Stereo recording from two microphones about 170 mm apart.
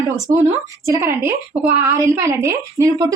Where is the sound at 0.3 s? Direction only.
15° right (ahead or behind).